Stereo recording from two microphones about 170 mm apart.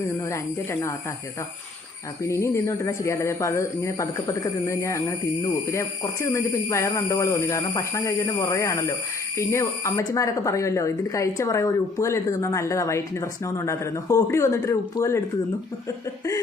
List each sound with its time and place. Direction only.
0.3 s speech: 15° left (ahead or behind)
2.2 s speech: 15° left (ahead or behind)